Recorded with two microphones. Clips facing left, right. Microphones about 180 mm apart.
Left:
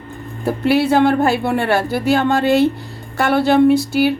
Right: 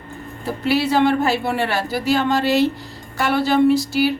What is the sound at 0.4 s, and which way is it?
A woman's voice, 55° left (ahead or behind).